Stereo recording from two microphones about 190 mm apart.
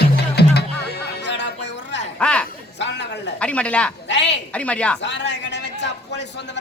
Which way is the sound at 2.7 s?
65° left (ahead or behind).